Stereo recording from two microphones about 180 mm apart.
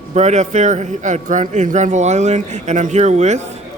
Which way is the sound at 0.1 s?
40° right (ahead or behind).